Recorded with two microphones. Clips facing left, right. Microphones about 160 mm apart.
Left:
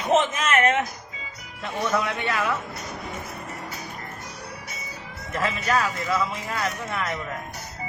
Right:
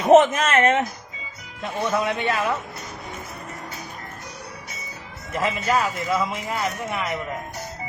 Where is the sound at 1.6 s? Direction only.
15° right (ahead or behind).